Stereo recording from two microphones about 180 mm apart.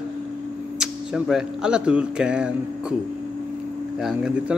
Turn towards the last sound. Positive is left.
turn(degrees=-5)  # may be behind; listen again after turning